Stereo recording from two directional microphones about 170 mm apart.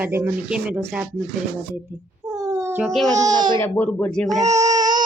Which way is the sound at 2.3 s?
20° right (ahead or behind).